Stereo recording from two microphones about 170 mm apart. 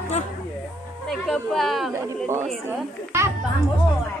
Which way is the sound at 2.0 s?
15° right (ahead or behind).